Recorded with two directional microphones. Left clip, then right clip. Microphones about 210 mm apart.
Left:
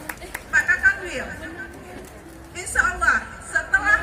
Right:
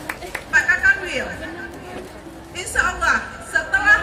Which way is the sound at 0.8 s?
15° right (ahead or behind).